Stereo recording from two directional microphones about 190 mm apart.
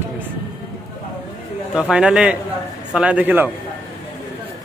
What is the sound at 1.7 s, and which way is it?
A man's voice, 5° right (ahead or behind).